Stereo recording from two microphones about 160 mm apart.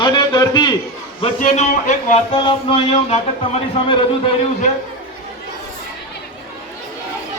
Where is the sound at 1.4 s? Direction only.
50° left (ahead or behind).